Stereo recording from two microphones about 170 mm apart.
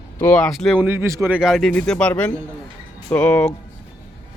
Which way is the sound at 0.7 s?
10° right (ahead or behind).